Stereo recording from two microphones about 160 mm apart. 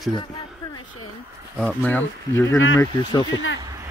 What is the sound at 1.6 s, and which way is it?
Speech, 10° left (ahead or behind).